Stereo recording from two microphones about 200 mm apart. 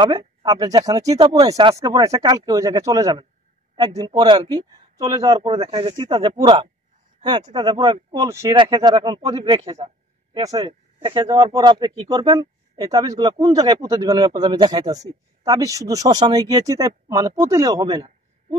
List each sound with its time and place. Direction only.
0.0 s speech: 20° right (ahead or behind)
10.3 s speech: 15° right (ahead or behind)